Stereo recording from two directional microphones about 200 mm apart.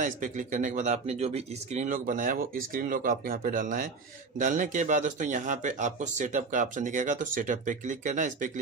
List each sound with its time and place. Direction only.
0.0 s speech: 40° right (ahead or behind)